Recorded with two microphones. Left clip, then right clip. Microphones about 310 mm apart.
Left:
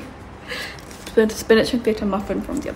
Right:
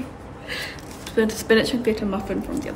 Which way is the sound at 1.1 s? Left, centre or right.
Centre.